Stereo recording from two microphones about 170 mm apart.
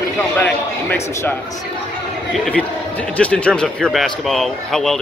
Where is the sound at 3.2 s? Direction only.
10° left (ahead or behind).